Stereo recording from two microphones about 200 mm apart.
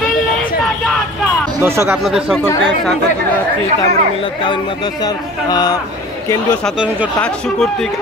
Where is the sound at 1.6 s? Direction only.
10° right (ahead or behind).